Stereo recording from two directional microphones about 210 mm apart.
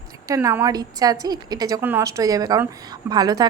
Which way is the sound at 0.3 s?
15° right (ahead or behind).